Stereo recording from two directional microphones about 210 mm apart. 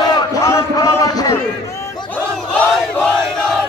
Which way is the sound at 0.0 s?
20° left (ahead or behind).